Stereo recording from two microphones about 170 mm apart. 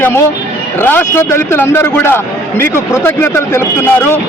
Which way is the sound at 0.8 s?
10° left (ahead or behind).